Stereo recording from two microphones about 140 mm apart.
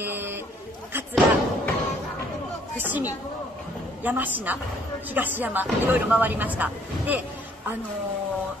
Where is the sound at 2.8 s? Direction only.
15° right (ahead or behind).